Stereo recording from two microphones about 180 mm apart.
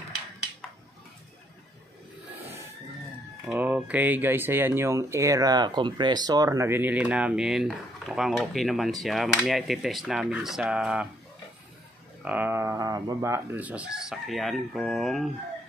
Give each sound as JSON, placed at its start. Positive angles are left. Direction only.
{"t": 3.4, "sound": "speech", "side_deg": -10}
{"t": 12.3, "sound": "speech", "side_deg": -10}